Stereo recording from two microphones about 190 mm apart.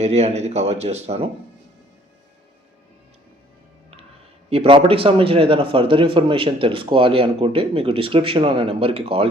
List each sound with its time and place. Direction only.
0.0 s speech: 35° right (ahead or behind)
4.4 s a man's voice: 30° right (ahead or behind)